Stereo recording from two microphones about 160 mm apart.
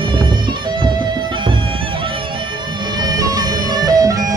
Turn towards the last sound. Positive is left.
turn(degrees=-20)  # may be behind; listen again after turning